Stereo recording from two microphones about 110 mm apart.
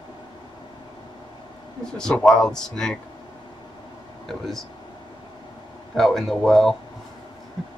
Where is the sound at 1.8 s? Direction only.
5° left (ahead or behind).